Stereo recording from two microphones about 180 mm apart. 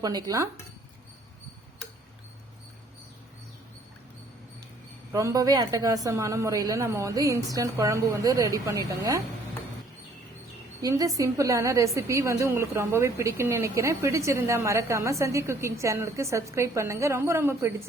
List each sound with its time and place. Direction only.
0.0 s speech: 20° right (ahead or behind)
5.1 s a woman's voice: 20° right (ahead or behind)
10.8 s a woman's voice: 20° right (ahead or behind)